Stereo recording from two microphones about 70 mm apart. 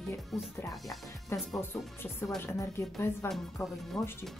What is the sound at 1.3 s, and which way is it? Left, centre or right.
Speech, left.